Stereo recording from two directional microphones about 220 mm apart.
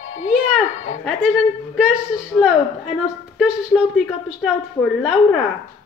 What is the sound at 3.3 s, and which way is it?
A woman's voice, 5° right (ahead or behind).